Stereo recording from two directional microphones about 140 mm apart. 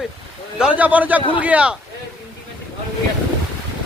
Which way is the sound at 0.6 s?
10° right (ahead or behind).